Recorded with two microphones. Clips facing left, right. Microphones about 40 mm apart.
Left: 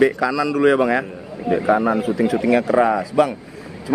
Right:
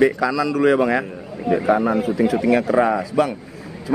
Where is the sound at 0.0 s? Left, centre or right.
Centre.